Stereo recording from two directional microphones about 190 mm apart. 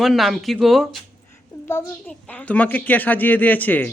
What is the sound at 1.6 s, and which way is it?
A woman's voice, 10° left (ahead or behind).